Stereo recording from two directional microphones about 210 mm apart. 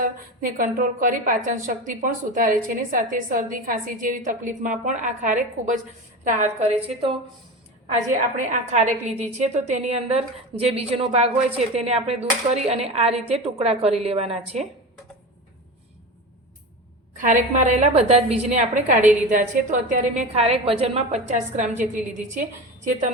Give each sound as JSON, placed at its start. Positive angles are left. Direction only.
{"t": 0.0, "sound": "a woman's voice", "side_deg": -40}
{"t": 17.2, "sound": "a woman's voice", "side_deg": -35}